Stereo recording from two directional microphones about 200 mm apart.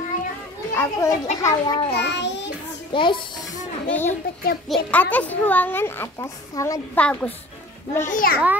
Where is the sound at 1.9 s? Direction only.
60° left (ahead or behind).